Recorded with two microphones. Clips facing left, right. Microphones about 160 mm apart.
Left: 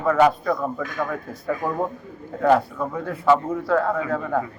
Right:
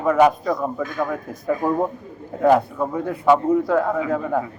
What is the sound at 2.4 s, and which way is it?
A man's voice, 20° right (ahead or behind).